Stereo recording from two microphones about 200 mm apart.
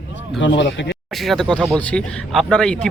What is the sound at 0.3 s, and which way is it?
Speech, 65° left (ahead or behind).